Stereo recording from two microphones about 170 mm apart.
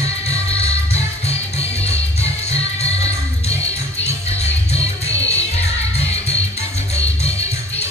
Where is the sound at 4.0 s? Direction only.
40° left (ahead or behind).